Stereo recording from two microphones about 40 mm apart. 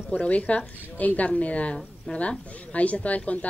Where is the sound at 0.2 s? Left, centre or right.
Left.